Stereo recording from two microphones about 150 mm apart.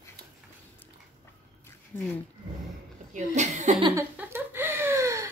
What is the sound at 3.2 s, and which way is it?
Chuckle, 50° right (ahead or behind).